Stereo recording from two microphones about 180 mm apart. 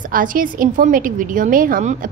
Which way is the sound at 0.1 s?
50° right (ahead or behind).